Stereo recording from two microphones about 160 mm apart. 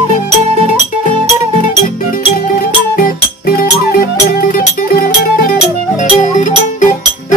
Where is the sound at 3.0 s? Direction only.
65° left (ahead or behind).